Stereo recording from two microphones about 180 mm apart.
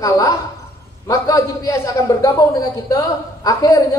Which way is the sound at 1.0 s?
20° left (ahead or behind).